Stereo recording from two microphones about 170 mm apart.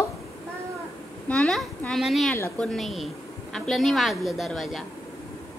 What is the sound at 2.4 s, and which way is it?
Speech, 15° left (ahead or behind).